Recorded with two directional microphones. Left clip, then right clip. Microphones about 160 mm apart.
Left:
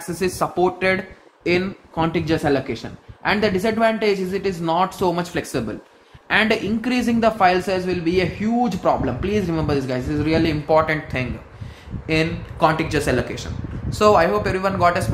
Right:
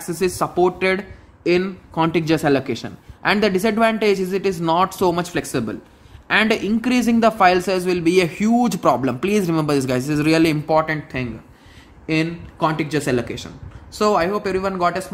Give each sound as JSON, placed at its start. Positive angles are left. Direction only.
{"t": 0.0, "sound": "speech", "side_deg": -40}
{"t": 2.0, "sound": "a man's voice", "side_deg": -55}
{"t": 10.7, "sound": "speech", "side_deg": -30}